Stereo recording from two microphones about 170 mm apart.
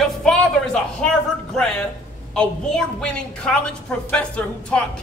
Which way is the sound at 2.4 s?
5° left (ahead or behind).